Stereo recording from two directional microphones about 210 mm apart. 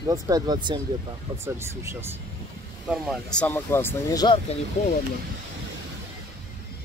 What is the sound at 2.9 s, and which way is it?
Speech, centre (ahead or behind).